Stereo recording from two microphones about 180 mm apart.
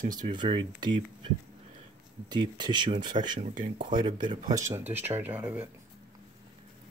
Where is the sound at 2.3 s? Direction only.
25° right (ahead or behind).